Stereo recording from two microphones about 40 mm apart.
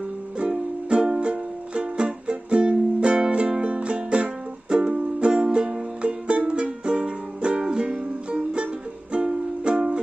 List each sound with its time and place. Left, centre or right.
0.8 s music: right